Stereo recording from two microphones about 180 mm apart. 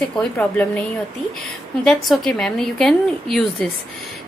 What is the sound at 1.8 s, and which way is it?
A woman's voice, 5° left (ahead or behind).